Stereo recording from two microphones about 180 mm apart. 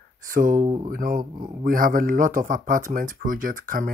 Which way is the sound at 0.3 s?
50° right (ahead or behind).